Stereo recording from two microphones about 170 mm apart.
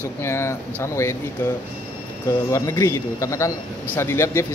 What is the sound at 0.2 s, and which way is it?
Speech, 15° left (ahead or behind).